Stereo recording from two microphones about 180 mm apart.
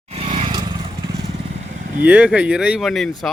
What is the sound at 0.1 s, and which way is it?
Vehicle, 35° right (ahead or behind).